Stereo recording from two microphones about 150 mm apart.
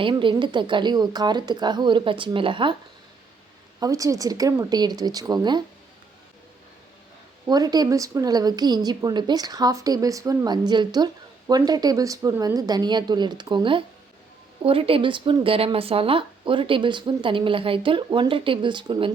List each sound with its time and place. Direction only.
0.0 s speech: 35° right (ahead or behind)
3.8 s a woman's voice: 25° right (ahead or behind)
7.4 s a woman's voice: 25° right (ahead or behind)